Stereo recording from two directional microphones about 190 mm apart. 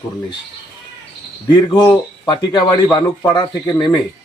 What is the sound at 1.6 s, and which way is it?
Speech, 20° left (ahead or behind).